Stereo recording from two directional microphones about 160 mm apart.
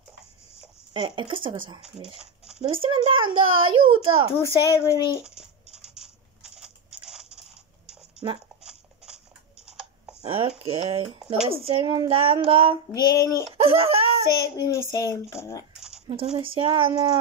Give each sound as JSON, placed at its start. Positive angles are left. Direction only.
{"t": 0.9, "sound": "a child's voice", "side_deg": -30}
{"t": 4.4, "sound": "a child's voice", "side_deg": 15}
{"t": 5.2, "sound": "coin", "side_deg": -5}
{"t": 8.2, "sound": "speech", "side_deg": -30}
{"t": 8.6, "sound": "a sound", "side_deg": -5}
{"t": 10.2, "sound": "a child's voice", "side_deg": -35}
{"t": 12.9, "sound": "a child's voice", "side_deg": 20}
{"t": 13.5, "sound": "a child's voice", "side_deg": -35}
{"t": 14.3, "sound": "a child's voice", "side_deg": 20}
{"t": 16.1, "sound": "a child's voice", "side_deg": -35}